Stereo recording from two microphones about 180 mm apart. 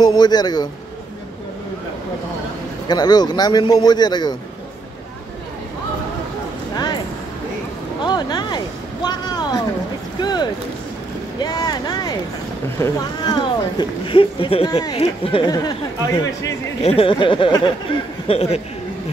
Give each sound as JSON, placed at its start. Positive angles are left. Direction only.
{"t": 0.0, "sound": "speech", "side_deg": 25}
{"t": 2.9, "sound": "speech", "side_deg": 20}
{"t": 8.0, "sound": "speech", "side_deg": 25}
{"t": 16.8, "sound": "speech", "side_deg": 30}